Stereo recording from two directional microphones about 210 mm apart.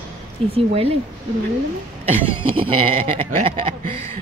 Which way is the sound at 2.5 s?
25° right (ahead or behind).